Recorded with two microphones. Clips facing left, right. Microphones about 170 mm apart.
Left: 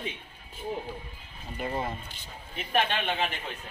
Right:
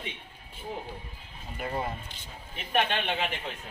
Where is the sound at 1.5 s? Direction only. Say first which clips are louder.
Left 1 dB; centre (ahead or behind).